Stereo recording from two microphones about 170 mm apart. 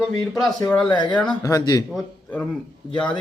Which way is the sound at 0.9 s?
25° left (ahead or behind).